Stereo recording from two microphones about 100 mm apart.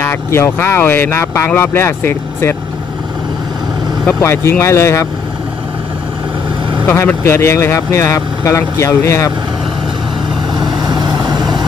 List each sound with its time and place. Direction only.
0.0 s speech: 25° left (ahead or behind)
4.2 s speech: 25° left (ahead or behind)
6.9 s speech: 25° left (ahead or behind)
10.9 s vehicle: 45° right (ahead or behind)